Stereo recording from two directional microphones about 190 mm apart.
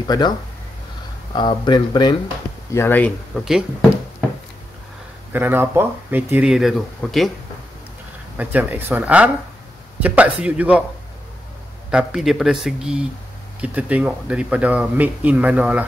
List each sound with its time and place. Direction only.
0.1 s speech: 20° left (ahead or behind)
2.7 s speech: 10° left (ahead or behind)
5.3 s speech: 10° right (ahead or behind)
8.4 s speech: 10° right (ahead or behind)
11.9 s speech: 5° right (ahead or behind)